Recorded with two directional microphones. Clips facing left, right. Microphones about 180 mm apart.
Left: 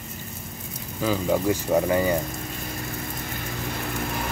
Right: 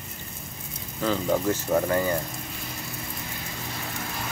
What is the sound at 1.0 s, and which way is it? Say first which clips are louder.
Speech: left 1 dB; 10° left (ahead or behind).